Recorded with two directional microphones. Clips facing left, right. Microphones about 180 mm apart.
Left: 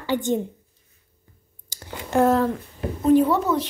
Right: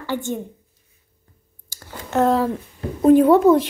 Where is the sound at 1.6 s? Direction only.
15° left (ahead or behind).